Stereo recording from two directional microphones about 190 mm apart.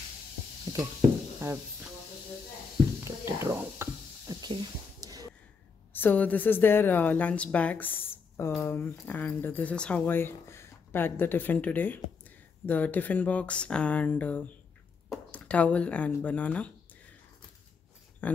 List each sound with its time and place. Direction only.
1.4 s speech: 15° right (ahead or behind)
3.3 s a sound: 15° right (ahead or behind)
5.9 s a woman's voice: 10° left (ahead or behind)
18.2 s speech: 10° left (ahead or behind)